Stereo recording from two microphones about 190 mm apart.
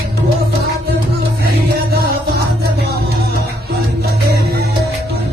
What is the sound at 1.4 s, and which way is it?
Music, 55° right (ahead or behind).